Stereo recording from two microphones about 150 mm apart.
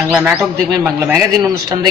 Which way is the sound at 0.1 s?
15° right (ahead or behind).